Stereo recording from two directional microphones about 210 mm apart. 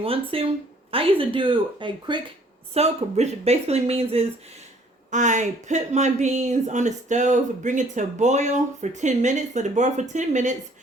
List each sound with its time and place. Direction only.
0.0 s speech: 25° right (ahead or behind)